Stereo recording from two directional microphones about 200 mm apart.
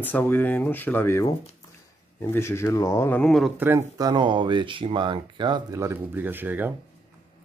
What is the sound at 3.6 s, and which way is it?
Speech, 15° right (ahead or behind).